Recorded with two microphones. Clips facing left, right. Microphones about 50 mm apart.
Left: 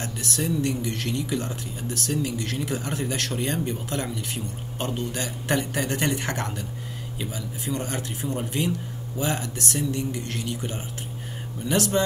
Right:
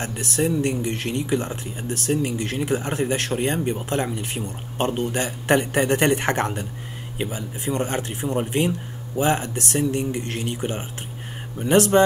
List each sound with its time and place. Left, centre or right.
0.0 s speech: right